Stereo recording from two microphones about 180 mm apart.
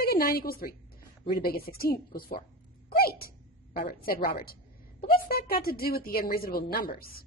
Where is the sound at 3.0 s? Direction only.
55° left (ahead or behind).